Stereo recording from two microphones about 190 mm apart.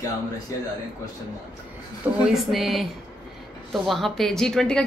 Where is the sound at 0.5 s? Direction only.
15° left (ahead or behind).